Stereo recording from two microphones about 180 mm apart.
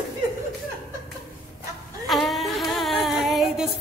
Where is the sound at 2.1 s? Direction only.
Centre (ahead or behind).